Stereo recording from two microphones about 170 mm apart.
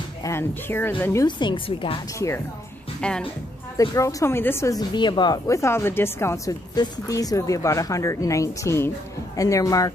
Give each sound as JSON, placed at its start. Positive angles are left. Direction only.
{"t": 0.2, "sound": "a woman's voice", "side_deg": 15}
{"t": 1.2, "sound": "speech", "side_deg": 30}
{"t": 2.1, "sound": "a woman's voice", "side_deg": 15}
{"t": 3.0, "sound": "a woman's voice", "side_deg": 5}
{"t": 3.7, "sound": "speech", "side_deg": 20}